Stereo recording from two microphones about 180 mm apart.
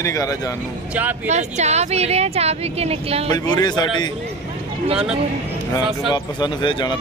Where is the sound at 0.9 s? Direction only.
10° right (ahead or behind).